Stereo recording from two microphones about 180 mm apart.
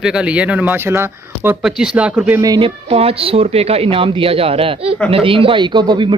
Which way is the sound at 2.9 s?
30° right (ahead or behind).